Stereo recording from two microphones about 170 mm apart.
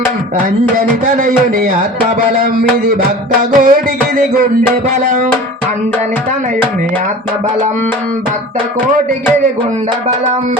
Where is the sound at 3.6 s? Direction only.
50° right (ahead or behind).